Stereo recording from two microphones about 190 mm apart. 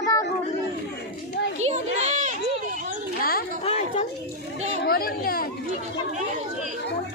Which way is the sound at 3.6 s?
30° left (ahead or behind).